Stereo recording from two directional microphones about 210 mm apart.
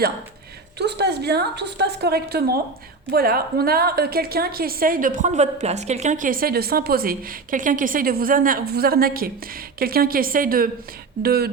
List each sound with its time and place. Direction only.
0.8 s a woman's voice: 50° right (ahead or behind)